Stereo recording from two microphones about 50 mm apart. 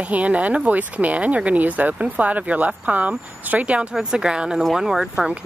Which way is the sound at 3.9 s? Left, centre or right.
Centre.